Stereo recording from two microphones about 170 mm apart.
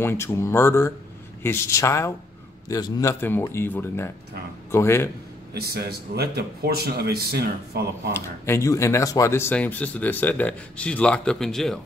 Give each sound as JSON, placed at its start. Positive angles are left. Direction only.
{"t": 0.0, "sound": "speech", "side_deg": 15}
{"t": 5.5, "sound": "speech", "side_deg": -70}
{"t": 8.1, "sound": "speech", "side_deg": 15}